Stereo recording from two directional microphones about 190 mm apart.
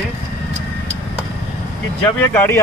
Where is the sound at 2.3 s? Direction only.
10° left (ahead or behind).